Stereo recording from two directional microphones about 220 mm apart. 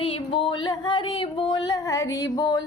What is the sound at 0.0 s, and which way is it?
A woman's voice, 25° left (ahead or behind).